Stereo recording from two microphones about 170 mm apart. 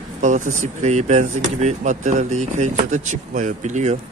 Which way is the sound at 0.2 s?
45° right (ahead or behind).